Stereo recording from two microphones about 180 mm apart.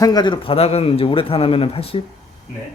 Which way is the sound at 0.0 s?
20° left (ahead or behind).